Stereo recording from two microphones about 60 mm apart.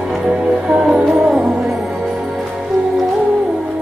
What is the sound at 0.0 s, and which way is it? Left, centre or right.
Music, centre.